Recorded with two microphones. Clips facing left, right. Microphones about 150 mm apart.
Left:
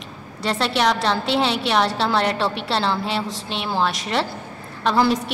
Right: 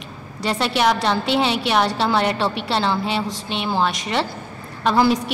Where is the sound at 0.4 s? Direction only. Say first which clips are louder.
Right 1 dB; centre (ahead or behind).